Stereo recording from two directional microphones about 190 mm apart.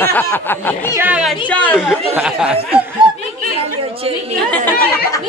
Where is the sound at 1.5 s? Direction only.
10° left (ahead or behind).